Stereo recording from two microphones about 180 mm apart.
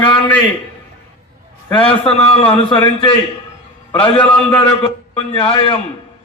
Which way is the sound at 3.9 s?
30° left (ahead or behind).